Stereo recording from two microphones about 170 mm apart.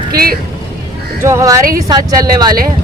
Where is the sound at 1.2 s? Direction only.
15° right (ahead or behind).